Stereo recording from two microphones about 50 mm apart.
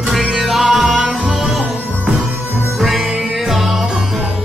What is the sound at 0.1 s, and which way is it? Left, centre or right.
Music, centre.